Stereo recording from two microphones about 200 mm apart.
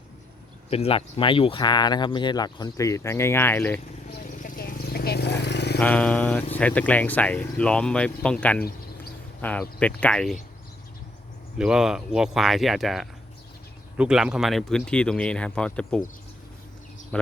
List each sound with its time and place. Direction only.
0.7 s speech: 30° left (ahead or behind); by 3.8 s 10° left (ahead or behind)
4.4 s a sound: 45° left (ahead or behind)
5.8 s speech: 5° left (ahead or behind)
11.5 s speech: 5° right (ahead or behind)